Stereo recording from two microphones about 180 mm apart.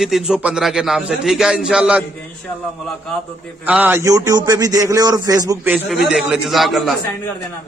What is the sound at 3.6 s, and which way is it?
A man's voice, 10° right (ahead or behind).